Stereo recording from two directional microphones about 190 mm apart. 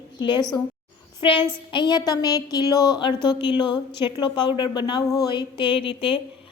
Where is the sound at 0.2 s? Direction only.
25° left (ahead or behind).